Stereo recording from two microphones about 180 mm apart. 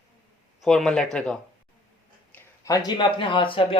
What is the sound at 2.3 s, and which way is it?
Speech, 20° left (ahead or behind).